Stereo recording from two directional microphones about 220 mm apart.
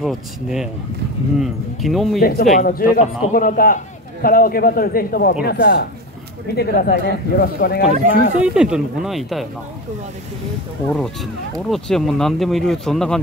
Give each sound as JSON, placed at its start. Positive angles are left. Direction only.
{"t": 0.0, "sound": "speech", "side_deg": 0}
{"t": 2.1, "sound": "a man's voice", "side_deg": 40}
{"t": 8.4, "sound": "speech", "side_deg": -5}
{"t": 11.7, "sound": "speech", "side_deg": 0}